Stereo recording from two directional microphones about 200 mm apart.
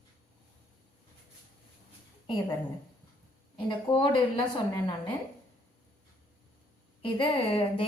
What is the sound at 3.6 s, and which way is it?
Speech, 25° left (ahead or behind).